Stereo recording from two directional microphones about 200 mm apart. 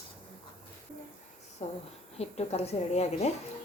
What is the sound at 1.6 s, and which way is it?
Speech, 35° left (ahead or behind).